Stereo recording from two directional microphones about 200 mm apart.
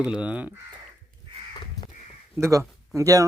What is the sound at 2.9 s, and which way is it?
Speech, 15° right (ahead or behind).